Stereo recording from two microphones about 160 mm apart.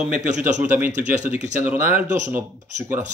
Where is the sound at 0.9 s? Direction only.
50° right (ahead or behind).